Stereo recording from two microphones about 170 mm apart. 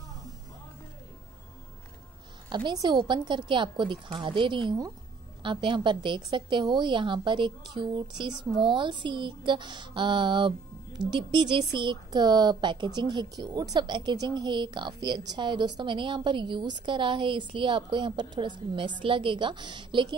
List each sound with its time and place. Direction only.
2.5 s speech: 25° right (ahead or behind)